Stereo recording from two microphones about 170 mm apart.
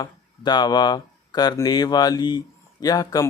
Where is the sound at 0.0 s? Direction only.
25° left (ahead or behind).